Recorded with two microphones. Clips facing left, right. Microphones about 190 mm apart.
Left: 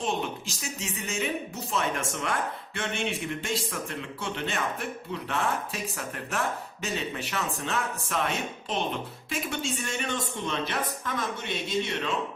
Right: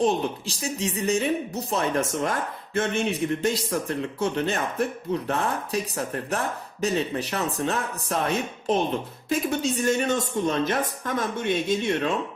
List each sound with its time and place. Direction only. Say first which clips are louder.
0.0 s a woman's voice: right 7 dB; 35° right (ahead or behind)